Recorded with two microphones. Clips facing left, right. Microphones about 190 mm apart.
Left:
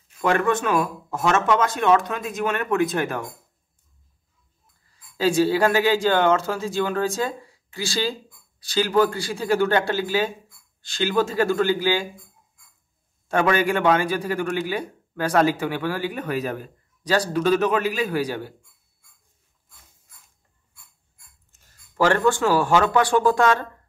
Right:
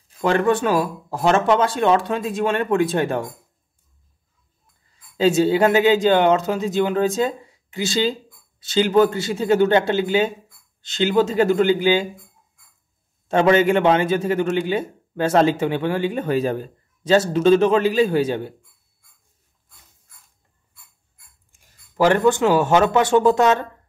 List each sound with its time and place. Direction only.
0.1 s speech: 30° right (ahead or behind)
5.1 s a man's voice: 20° right (ahead or behind)
13.3 s a man's voice: 25° right (ahead or behind)
21.5 s a man's voice: 10° right (ahead or behind)